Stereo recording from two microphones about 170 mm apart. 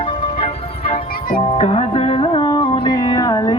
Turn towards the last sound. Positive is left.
turn(degrees=20)  # may be behind; listen again after turning